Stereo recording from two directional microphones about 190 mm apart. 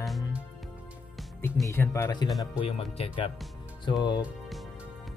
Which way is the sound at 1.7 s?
15° left (ahead or behind).